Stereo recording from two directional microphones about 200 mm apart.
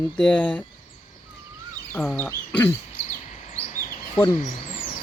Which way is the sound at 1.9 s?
5° left (ahead or behind).